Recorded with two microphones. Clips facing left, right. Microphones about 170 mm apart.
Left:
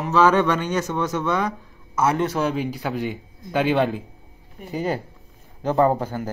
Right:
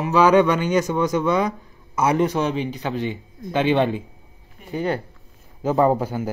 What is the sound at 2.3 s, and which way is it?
A man's voice, 5° left (ahead or behind).